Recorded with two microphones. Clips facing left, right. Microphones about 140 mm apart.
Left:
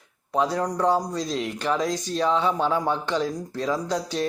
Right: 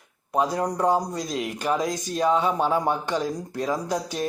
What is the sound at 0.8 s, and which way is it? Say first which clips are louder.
Speech: left 1 dB; 15° right (ahead or behind).